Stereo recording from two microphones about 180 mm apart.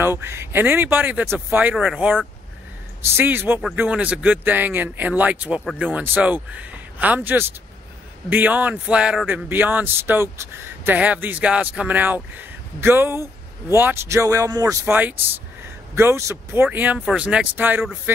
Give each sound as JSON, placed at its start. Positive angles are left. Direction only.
{"t": 0.0, "sound": "speech", "side_deg": -15}